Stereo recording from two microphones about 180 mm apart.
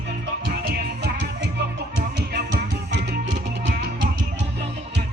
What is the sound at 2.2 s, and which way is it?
Music, 65° right (ahead or behind).